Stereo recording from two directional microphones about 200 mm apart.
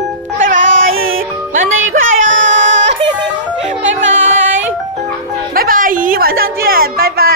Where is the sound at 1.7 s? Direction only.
85° right.